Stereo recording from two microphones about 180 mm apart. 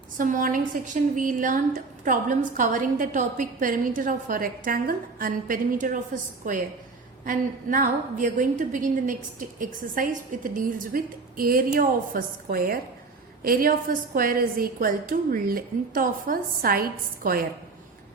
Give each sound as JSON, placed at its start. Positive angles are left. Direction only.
{"t": 0.2, "sound": "a woman's voice", "side_deg": -45}